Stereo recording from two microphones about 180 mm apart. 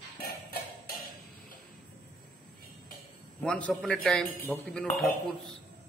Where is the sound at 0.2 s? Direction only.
60° left (ahead or behind).